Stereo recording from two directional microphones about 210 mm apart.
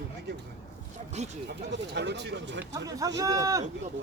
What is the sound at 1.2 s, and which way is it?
Speech, 30° right (ahead or behind).